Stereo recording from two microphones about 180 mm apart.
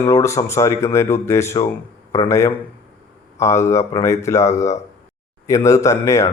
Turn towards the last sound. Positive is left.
turn(degrees=15)  # may be behind; listen again after turning